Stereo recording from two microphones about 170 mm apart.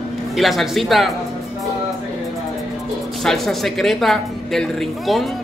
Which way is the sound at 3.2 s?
Centre (ahead or behind).